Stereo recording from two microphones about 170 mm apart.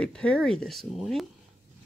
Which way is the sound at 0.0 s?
5° left (ahead or behind).